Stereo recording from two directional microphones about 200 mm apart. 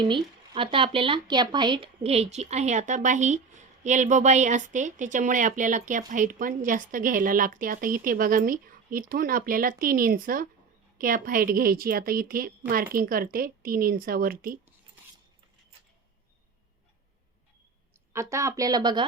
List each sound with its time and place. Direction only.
0.0 s speech: 25° right (ahead or behind); by 14.6 s 45° right (ahead or behind)
18.1 s speech: 15° right (ahead or behind)